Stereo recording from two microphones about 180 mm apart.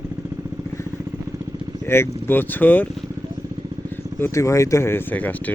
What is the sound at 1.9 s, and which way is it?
Speech, 10° left (ahead or behind).